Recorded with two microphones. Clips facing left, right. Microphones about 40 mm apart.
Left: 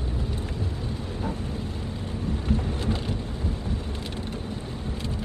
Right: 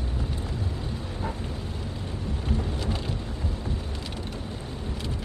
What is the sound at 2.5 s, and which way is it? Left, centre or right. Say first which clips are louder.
Vehicle: left 2 dB; left.